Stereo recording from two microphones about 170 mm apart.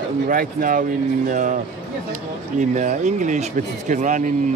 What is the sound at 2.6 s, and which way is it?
Speech, 45° right (ahead or behind).